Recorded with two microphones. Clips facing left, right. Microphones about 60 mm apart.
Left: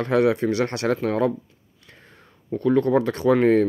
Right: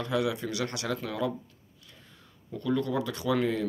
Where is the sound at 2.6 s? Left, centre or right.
Left.